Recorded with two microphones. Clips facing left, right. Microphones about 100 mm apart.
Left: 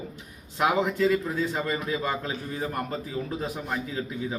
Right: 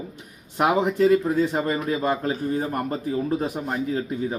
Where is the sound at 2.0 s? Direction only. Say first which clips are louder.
Right 6 dB; 45° right (ahead or behind).